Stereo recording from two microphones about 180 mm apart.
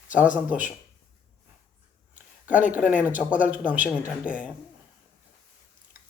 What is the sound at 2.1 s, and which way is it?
A man's voice, 10° right (ahead or behind).